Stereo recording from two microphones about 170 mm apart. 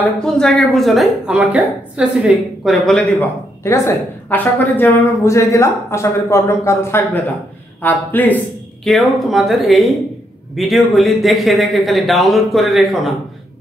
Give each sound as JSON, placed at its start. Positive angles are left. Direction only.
{"t": 0.0, "sound": "speech", "side_deg": 5}
{"t": 3.2, "sound": "a woman's voice", "side_deg": 15}